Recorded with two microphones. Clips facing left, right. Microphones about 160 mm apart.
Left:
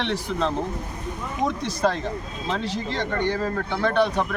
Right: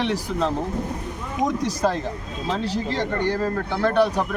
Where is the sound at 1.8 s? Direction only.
5° right (ahead or behind).